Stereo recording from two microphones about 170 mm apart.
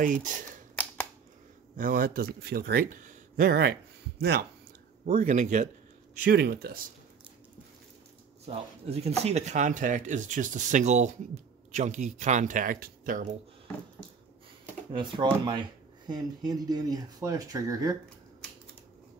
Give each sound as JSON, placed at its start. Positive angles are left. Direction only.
{"t": 0.0, "sound": "speech", "side_deg": -50}
{"t": 1.8, "sound": "speech", "side_deg": -55}
{"t": 5.0, "sound": "speech", "side_deg": -50}
{"t": 6.2, "sound": "speech", "side_deg": -70}
{"t": 8.5, "sound": "speech", "side_deg": -35}
{"t": 14.9, "sound": "speech", "side_deg": -30}